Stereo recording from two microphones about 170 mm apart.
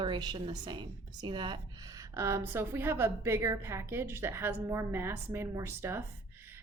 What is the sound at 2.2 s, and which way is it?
A woman's voice, 15° right (ahead or behind).